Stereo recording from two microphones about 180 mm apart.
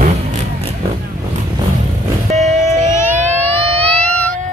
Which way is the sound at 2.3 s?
40° right (ahead or behind).